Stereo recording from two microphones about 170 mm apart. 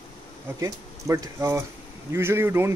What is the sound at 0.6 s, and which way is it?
A man's voice, 20° right (ahead or behind).